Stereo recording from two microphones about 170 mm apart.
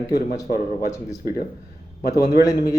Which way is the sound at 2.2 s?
75° left (ahead or behind).